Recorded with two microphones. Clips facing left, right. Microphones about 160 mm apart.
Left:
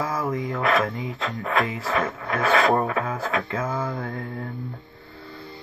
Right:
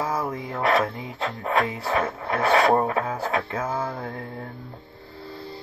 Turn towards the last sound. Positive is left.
turn(degrees=-30)  # may be behind; listen again after turning